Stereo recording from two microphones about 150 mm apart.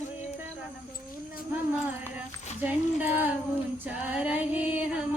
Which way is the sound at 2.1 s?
10° right (ahead or behind).